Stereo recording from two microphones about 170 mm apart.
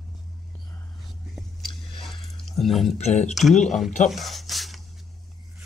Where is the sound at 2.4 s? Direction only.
Centre (ahead or behind).